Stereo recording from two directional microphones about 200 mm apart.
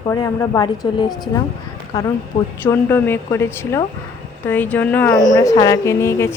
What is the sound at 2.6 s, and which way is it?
Speech, 10° left (ahead or behind).